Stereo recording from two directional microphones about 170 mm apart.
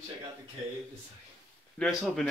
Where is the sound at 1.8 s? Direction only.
Centre (ahead or behind).